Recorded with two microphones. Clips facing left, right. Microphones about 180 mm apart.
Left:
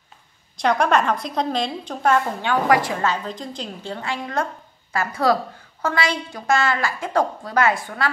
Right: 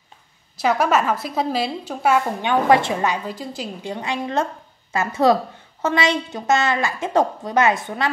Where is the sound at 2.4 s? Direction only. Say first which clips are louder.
Right 4 dB; 25° right (ahead or behind).